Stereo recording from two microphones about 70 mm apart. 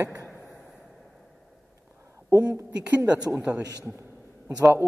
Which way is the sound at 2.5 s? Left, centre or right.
Right.